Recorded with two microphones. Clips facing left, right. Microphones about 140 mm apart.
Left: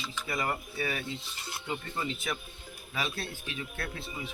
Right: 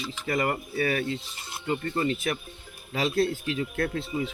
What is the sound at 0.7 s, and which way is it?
Speech, 80° right.